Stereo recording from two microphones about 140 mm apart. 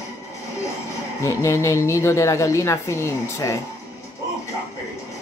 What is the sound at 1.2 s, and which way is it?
A woman's voice, 20° left (ahead or behind).